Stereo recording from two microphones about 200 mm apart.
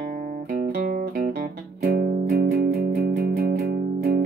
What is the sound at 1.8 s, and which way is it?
Music, 50° right (ahead or behind).